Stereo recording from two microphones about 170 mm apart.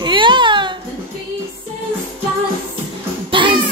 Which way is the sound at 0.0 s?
30° right (ahead or behind).